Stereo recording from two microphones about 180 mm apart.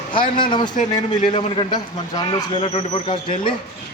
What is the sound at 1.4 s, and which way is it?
A man's voice, 25° left (ahead or behind).